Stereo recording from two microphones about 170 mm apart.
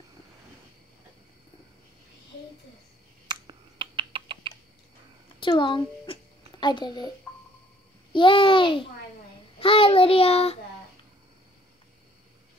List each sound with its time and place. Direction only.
3.3 s typing: 30° right (ahead or behind)
5.4 s a child's voice: 30° left (ahead or behind)
8.1 s child singing: 30° left (ahead or behind)